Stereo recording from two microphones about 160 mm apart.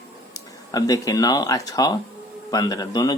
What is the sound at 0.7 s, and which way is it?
Speech, 20° left (ahead or behind).